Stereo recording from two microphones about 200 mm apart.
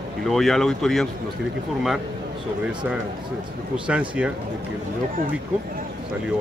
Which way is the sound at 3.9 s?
5° right (ahead or behind).